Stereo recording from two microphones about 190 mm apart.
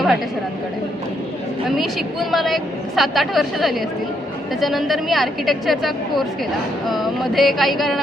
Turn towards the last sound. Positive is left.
turn(degrees=0)  # may be behind; listen again after turning